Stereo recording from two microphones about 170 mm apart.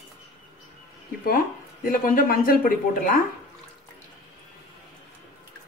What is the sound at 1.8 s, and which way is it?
Speech, 55° left (ahead or behind).